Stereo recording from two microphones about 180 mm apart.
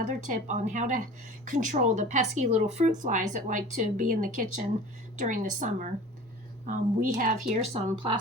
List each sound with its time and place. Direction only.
0.0 s speech: 45° right (ahead or behind); by 8.2 s 30° right (ahead or behind)